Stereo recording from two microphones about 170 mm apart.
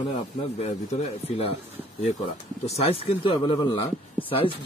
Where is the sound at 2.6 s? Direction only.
35° left (ahead or behind).